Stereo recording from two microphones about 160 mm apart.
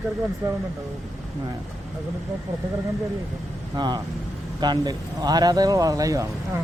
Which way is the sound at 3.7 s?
25° right (ahead or behind).